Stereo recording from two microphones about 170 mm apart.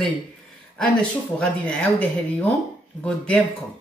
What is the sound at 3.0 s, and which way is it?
Speech, 5° left (ahead or behind).